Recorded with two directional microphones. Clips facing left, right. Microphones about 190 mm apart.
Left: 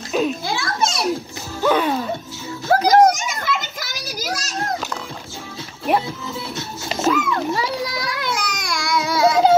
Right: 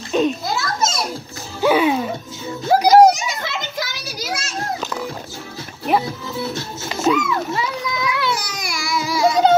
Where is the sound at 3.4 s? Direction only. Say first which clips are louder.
Even; 45° left (ahead or behind).